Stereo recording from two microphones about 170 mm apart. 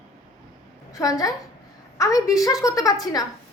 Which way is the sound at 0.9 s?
20° left (ahead or behind).